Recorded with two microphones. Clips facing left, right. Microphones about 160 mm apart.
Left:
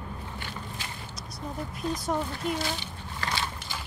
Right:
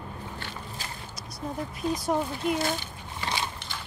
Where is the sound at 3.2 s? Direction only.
20° right (ahead or behind).